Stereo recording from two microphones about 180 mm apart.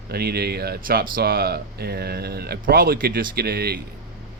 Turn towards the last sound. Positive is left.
turn(degrees=-60)  # may be behind; listen again after turning